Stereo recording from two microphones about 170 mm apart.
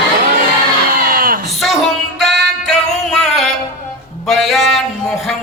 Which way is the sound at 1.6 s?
Centre (ahead or behind).